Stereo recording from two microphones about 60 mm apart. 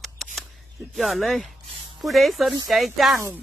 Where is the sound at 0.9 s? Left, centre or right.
Centre.